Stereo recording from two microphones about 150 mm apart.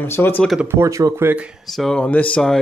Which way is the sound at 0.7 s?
20° right (ahead or behind).